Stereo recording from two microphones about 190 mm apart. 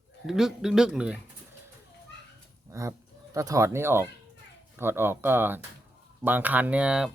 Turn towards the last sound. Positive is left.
turn(degrees=-5)  # may be behind; listen again after turning